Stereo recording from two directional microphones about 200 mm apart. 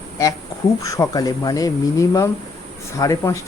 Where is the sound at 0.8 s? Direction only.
15° left (ahead or behind).